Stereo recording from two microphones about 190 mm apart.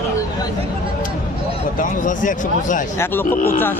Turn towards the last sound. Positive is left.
turn(degrees=10)  # may be behind; listen again after turning